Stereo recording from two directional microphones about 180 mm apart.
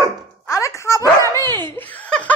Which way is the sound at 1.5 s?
25° right (ahead or behind).